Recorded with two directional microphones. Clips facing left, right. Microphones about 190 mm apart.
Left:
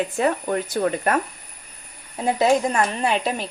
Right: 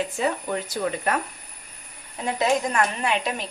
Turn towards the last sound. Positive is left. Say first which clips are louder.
# left 3 dB
turn(degrees=30)  # may be behind; listen again after turning